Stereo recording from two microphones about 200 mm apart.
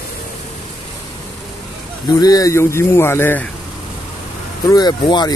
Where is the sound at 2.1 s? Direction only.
15° left (ahead or behind).